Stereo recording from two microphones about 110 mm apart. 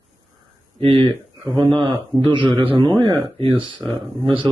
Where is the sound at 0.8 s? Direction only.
55° right (ahead or behind).